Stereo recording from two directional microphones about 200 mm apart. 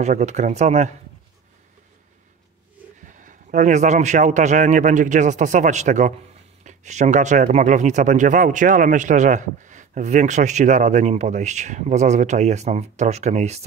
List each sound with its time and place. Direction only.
0.0 s speech: 35° right (ahead or behind)
3.1 s speech: 40° right (ahead or behind)